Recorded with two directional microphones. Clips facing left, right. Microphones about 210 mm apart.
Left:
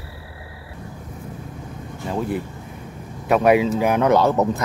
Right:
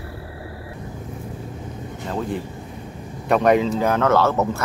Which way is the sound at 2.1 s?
10° left (ahead or behind).